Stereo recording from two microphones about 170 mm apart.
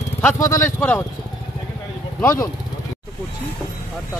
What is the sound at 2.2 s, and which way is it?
Speech, 15° left (ahead or behind).